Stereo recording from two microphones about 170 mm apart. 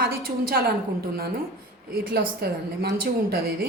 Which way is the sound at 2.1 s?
70° right (ahead or behind).